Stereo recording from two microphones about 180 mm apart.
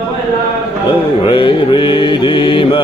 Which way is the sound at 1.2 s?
30° left (ahead or behind).